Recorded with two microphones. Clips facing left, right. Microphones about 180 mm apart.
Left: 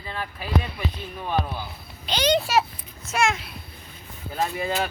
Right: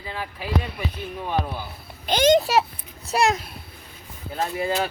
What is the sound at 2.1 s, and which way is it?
A child's voice, 50° right (ahead or behind).